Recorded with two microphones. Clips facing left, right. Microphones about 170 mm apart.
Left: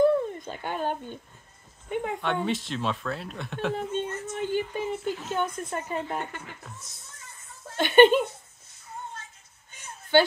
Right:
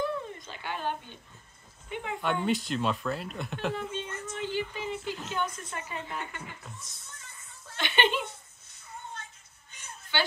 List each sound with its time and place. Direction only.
0.0 s a sound: 50° left (ahead or behind)
1.9 s speech: 45° left (ahead or behind)
2.2 s speech: centre (ahead or behind)
3.7 s speech: 50° left (ahead or behind)
7.6 s speech: 45° left (ahead or behind)
10.1 s a woman's voice: 50° left (ahead or behind)